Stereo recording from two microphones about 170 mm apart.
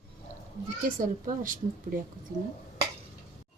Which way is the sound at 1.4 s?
55° right (ahead or behind).